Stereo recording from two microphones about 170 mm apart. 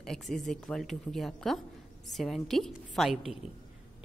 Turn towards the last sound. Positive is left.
turn(degrees=0)  # may be behind; listen again after turning